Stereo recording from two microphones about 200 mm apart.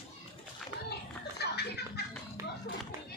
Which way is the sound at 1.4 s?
55° left (ahead or behind).